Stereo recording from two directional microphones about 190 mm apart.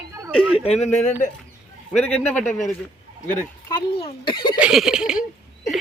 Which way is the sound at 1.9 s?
5° left (ahead or behind).